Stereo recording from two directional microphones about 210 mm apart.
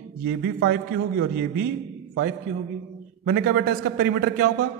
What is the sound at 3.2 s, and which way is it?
A man's voice, 45° right (ahead or behind).